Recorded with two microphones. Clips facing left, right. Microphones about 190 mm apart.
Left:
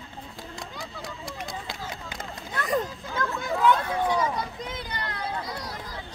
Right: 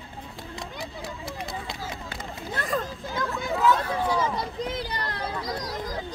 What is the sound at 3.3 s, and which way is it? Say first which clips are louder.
Hubbub: even; centre (ahead or behind).